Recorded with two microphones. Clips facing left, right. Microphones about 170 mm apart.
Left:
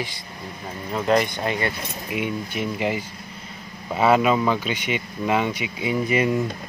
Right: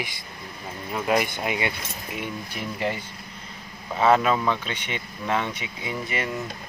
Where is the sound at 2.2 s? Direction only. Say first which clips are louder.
Left 7 dB; 5° left (ahead or behind).